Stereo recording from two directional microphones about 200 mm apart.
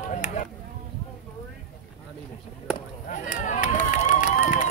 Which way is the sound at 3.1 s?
40° left (ahead or behind).